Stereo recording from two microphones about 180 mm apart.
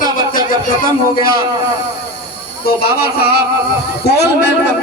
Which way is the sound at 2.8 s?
60° left (ahead or behind).